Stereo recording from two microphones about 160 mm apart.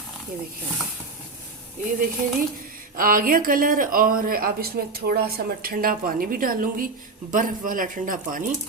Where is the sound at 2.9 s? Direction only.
60° right (ahead or behind).